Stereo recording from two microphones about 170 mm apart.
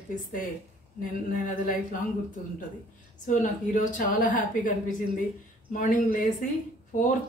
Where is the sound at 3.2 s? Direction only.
50° left (ahead or behind).